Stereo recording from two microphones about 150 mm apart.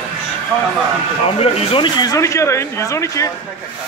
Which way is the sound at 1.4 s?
40° left (ahead or behind).